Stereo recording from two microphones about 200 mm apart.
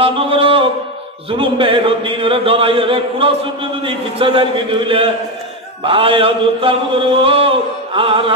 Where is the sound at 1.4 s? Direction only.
25° right (ahead or behind).